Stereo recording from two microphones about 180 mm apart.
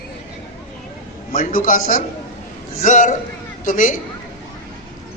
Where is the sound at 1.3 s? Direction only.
45° left (ahead or behind).